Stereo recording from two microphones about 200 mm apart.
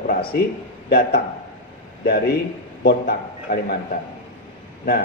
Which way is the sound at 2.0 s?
50° left (ahead or behind).